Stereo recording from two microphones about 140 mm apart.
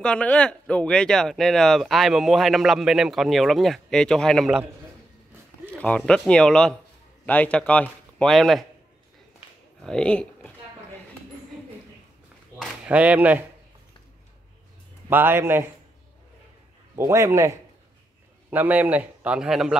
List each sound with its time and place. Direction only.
0.0 s speech: 5° left (ahead or behind)
5.7 s speech: 10° left (ahead or behind)
9.8 s speech: 5° left (ahead or behind)
12.8 s a man's voice: 10° right (ahead or behind)
15.0 s a man's voice: 15° right (ahead or behind)
16.9 s a man's voice: 20° right (ahead or behind)
18.5 s a man's voice: 10° right (ahead or behind)